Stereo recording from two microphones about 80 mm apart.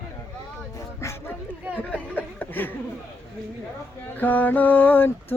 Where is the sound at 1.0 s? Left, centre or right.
Left.